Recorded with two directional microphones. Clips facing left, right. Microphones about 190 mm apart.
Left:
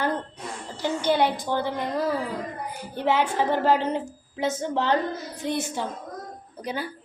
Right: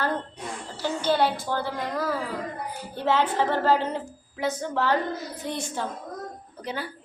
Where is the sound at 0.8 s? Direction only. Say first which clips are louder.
Left 1 dB; 15° left (ahead or behind).